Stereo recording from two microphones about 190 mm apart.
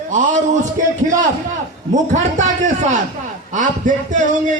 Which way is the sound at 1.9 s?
40° right (ahead or behind).